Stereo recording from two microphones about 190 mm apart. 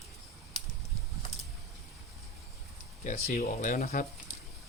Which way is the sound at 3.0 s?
40° left (ahead or behind).